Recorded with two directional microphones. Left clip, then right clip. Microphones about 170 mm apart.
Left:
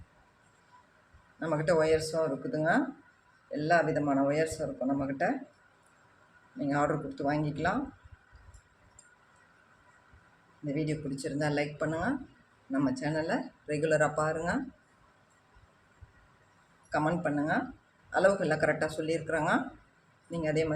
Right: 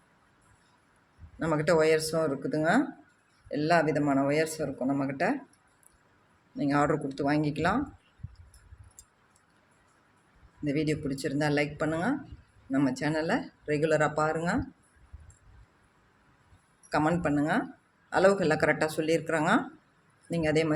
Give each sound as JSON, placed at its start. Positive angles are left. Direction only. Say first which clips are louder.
{"t": 1.4, "sound": "speech", "louder": "right 2 dB", "side_deg": -50}
{"t": 6.6, "sound": "speech", "louder": "right 3 dB", "side_deg": -50}
{"t": 10.7, "sound": "speech", "louder": "right 4 dB", "side_deg": -55}
{"t": 16.9, "sound": "speech", "louder": "right 3 dB", "side_deg": -50}